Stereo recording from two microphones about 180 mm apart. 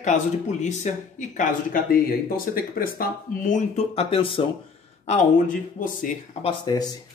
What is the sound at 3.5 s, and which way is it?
Speech, 40° left (ahead or behind).